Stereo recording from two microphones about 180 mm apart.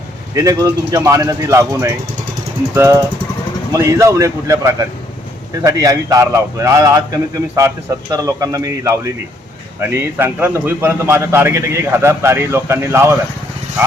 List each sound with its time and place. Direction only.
0.3 s a man's voice: 20° right (ahead or behind)
8.1 s a man's voice: 15° right (ahead or behind)